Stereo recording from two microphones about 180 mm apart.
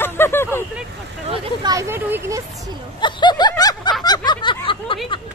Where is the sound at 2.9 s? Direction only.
25° left (ahead or behind).